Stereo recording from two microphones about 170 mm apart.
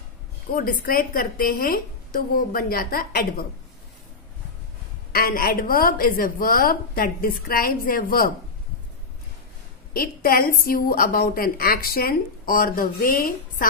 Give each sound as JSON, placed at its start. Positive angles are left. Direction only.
{"t": 0.6, "sound": "a woman's voice", "side_deg": 60}
{"t": 5.1, "sound": "a woman's voice", "side_deg": 60}
{"t": 9.9, "sound": "a woman's voice", "side_deg": 60}